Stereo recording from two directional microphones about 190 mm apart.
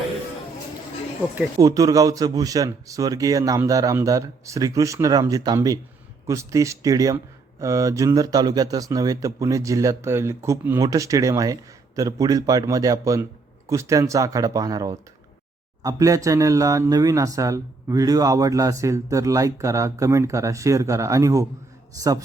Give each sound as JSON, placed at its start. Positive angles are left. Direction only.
{"t": 1.5, "sound": "speech", "side_deg": -20}